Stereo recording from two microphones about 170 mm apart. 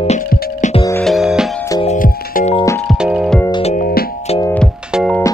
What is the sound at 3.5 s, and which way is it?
Music, 35° left (ahead or behind).